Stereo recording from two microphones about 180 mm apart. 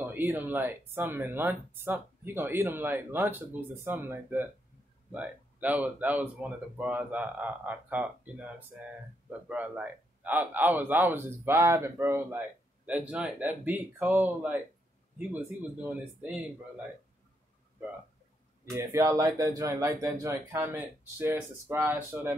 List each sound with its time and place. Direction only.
0.0 s a man's voice: 10° right (ahead or behind)
15.8 s a man's voice: 10° right (ahead or behind)
18.7 s a man's voice: 15° right (ahead or behind)